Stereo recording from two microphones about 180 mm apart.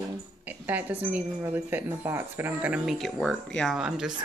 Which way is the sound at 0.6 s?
10° right (ahead or behind).